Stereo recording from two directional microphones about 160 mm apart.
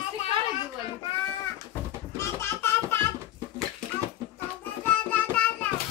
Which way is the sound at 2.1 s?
15° left (ahead or behind).